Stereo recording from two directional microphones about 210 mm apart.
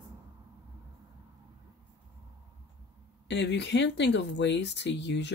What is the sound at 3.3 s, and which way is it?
Speech, 55° left (ahead or behind).